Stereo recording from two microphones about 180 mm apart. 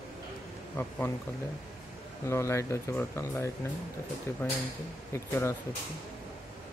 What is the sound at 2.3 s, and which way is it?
Speech, 15° left (ahead or behind).